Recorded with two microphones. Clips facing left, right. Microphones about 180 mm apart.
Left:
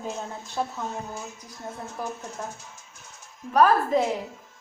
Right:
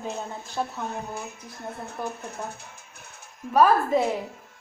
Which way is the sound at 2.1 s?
60° right (ahead or behind).